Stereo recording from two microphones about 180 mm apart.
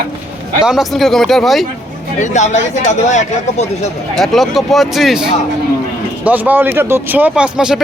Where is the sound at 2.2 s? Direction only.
40° left (ahead or behind).